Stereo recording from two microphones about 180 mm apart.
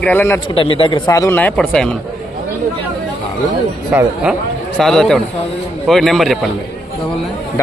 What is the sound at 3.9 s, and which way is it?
Speech, 10° right (ahead or behind).